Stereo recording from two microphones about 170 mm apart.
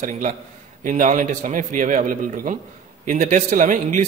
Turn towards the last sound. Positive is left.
turn(degrees=-50)  # may be behind; listen again after turning